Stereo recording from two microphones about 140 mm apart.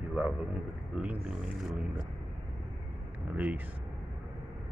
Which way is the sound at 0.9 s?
10° right (ahead or behind).